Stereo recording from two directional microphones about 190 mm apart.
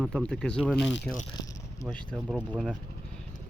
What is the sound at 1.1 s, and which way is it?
Speech, 15° left (ahead or behind).